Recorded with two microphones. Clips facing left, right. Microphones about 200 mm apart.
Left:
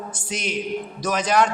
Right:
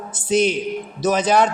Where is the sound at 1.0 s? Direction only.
30° right (ahead or behind).